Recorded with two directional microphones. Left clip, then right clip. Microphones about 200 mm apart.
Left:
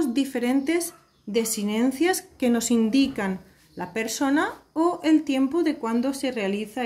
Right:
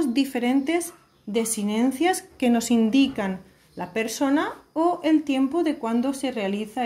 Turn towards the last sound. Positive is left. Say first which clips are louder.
# even
turn(degrees=0)  # may be behind; listen again after turning